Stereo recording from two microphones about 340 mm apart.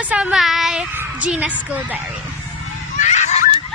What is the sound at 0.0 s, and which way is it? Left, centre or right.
Speech, centre.